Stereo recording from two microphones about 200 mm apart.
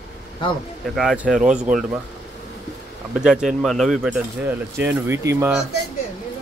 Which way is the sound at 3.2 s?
5° right (ahead or behind).